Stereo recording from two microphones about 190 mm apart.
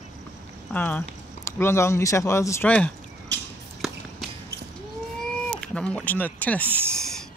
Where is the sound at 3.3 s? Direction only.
65° right (ahead or behind).